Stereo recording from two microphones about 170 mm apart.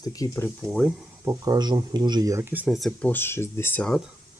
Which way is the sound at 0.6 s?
Centre (ahead or behind).